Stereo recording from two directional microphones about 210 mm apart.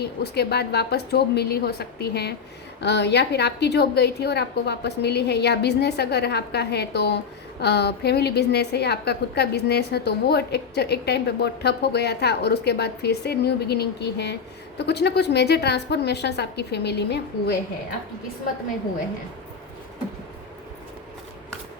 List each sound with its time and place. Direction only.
0.0 s a woman's voice: 50° left (ahead or behind)